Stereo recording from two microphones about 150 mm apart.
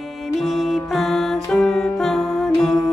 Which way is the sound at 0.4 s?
Centre (ahead or behind).